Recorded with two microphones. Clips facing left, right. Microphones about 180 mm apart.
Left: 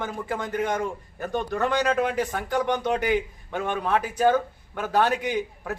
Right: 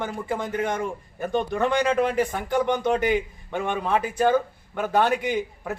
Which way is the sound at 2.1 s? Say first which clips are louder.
Right 2 dB; 5° right (ahead or behind).